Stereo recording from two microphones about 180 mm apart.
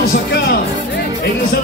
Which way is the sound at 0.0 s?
60° left (ahead or behind).